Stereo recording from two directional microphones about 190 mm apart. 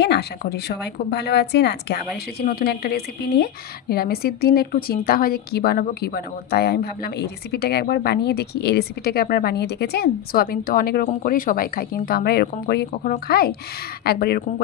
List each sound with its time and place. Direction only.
0.0 s a woman's voice: 60° left (ahead or behind)
12.9 s a woman's voice: 40° left (ahead or behind); by 14.4 s 55° left (ahead or behind)